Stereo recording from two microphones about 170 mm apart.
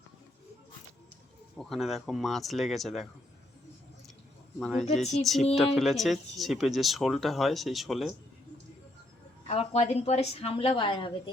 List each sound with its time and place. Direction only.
1.5 s speech: centre (ahead or behind)
4.6 s speech: centre (ahead or behind)
9.5 s a woman's voice: 40° left (ahead or behind)